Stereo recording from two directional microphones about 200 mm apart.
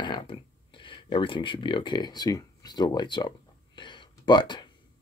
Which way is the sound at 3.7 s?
25° left (ahead or behind).